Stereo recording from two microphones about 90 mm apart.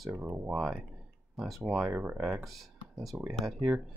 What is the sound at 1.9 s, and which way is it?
Speech, 15° right (ahead or behind).